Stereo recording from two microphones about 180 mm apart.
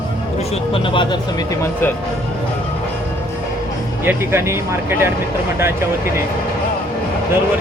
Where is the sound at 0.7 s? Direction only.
30° left (ahead or behind).